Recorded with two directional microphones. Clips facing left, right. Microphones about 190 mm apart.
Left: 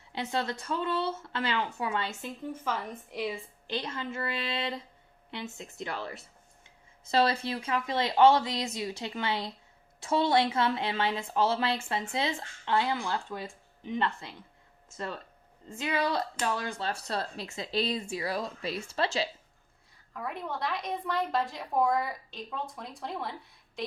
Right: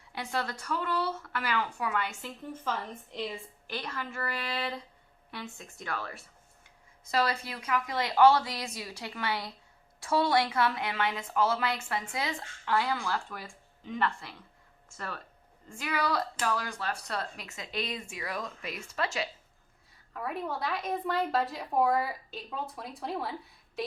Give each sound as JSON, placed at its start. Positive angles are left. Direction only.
{"t": 0.1, "sound": "a woman's voice", "side_deg": 20}
{"t": 2.5, "sound": "a woman's voice", "side_deg": 10}
{"t": 3.7, "sound": "a woman's voice", "side_deg": 25}
{"t": 20.1, "sound": "a woman's voice", "side_deg": 0}